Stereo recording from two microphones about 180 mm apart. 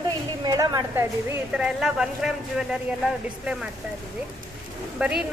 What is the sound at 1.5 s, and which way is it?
Speech, 5° right (ahead or behind).